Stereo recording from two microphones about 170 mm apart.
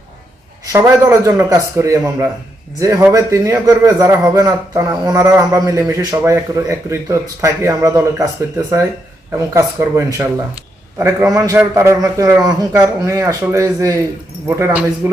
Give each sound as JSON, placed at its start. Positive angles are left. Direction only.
{"t": 0.7, "sound": "a man's voice", "side_deg": -15}